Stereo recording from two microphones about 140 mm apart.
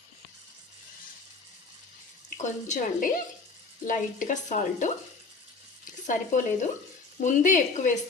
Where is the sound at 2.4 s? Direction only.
60° left (ahead or behind).